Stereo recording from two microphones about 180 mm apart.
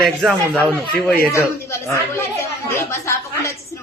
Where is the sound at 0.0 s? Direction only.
Centre (ahead or behind).